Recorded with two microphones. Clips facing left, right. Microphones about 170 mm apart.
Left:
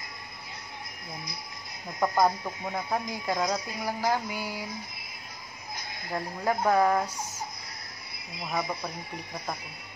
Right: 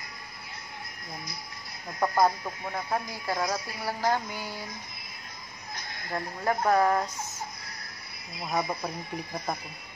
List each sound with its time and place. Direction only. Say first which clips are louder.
2.0 s speech: even; centre (ahead or behind)
2.6 s speech: even; 15° left (ahead or behind)
6.0 s speech: even; 10° left (ahead or behind)
8.4 s speech: right 2 dB; centre (ahead or behind)